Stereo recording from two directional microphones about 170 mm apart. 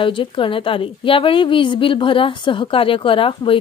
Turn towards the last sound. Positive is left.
turn(degrees=30)  # may be behind; listen again after turning